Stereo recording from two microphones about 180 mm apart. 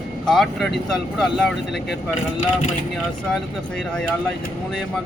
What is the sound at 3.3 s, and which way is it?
Speech, 5° left (ahead or behind).